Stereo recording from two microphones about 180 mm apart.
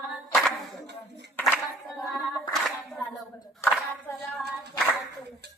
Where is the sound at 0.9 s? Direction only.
75° right (ahead or behind).